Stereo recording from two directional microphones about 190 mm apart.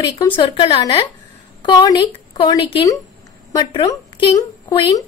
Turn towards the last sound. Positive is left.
turn(degrees=20)  # may be behind; listen again after turning